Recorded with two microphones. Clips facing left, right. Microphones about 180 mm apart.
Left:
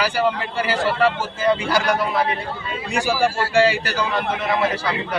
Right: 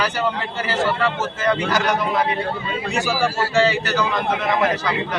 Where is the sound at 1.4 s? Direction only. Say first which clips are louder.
Left 1 dB; 10° left (ahead or behind).